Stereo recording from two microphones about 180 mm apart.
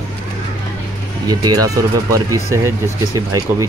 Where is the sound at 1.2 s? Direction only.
20° right (ahead or behind).